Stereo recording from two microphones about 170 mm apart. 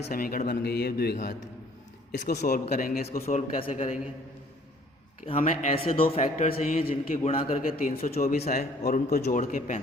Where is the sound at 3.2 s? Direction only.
45° left (ahead or behind).